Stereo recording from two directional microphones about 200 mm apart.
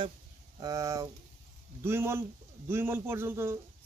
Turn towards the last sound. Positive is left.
turn(degrees=-10)  # may be behind; listen again after turning